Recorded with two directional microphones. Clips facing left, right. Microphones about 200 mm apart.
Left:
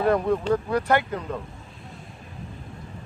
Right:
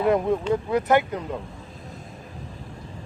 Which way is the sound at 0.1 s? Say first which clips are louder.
Even; 20° right (ahead or behind).